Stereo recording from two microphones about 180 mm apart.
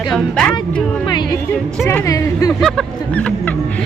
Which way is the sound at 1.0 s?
25° left (ahead or behind).